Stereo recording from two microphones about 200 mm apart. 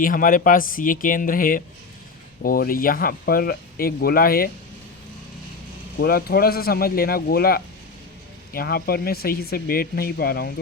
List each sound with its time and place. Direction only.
0.0 s speech: 45° left (ahead or behind)
6.0 s speech: 50° left (ahead or behind)